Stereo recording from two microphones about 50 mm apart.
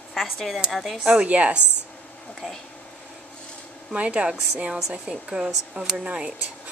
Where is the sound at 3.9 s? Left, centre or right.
Right.